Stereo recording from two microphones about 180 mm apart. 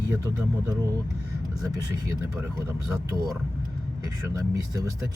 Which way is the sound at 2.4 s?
15° right (ahead or behind).